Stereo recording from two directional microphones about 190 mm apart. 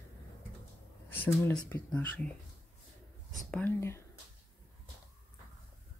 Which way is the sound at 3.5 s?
10° left (ahead or behind).